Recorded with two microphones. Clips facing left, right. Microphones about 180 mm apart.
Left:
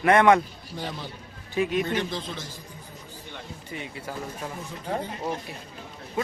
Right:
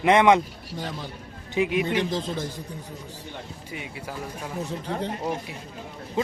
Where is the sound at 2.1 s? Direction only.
45° right (ahead or behind).